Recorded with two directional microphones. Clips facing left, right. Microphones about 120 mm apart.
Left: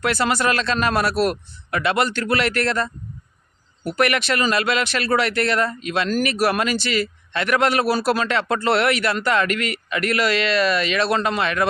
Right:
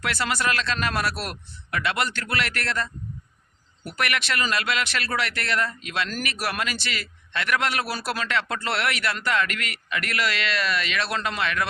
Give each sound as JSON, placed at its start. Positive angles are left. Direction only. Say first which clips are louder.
{"t": 0.0, "sound": "speech", "louder": "left 6 dB", "side_deg": 35}